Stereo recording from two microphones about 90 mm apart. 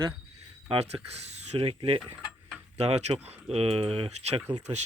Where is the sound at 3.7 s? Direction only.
90° right.